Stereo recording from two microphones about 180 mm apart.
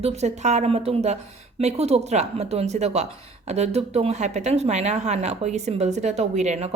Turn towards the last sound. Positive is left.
turn(degrees=-40)  # may be behind; listen again after turning